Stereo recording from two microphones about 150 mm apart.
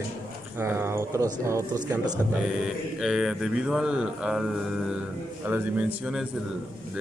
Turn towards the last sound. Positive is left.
turn(degrees=-5)  # may be behind; listen again after turning